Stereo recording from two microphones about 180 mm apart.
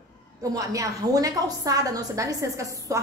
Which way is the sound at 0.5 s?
20° right (ahead or behind).